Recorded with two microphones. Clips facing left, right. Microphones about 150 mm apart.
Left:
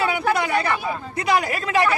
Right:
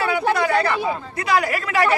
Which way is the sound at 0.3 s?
20° left (ahead or behind).